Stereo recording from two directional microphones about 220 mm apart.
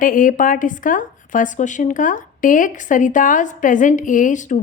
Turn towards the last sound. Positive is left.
turn(degrees=35)  # may be behind; listen again after turning